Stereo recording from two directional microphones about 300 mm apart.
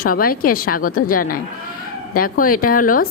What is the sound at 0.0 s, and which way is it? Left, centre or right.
Speech, left.